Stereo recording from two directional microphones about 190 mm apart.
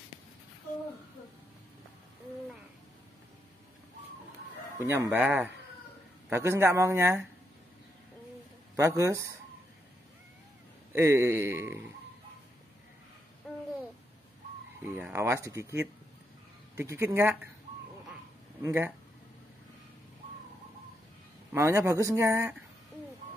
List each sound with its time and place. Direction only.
4.8 s speech: 10° right (ahead or behind)
8.7 s speech: 15° right (ahead or behind)
11.0 s speech: 15° right (ahead or behind)
13.4 s babbling: centre (ahead or behind)
14.8 s speech: 10° right (ahead or behind)
18.6 s speech: 10° right (ahead or behind)
21.5 s speech: 15° right (ahead or behind)